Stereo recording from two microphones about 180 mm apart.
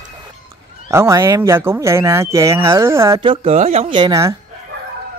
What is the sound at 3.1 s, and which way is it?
Speech, 30° right (ahead or behind).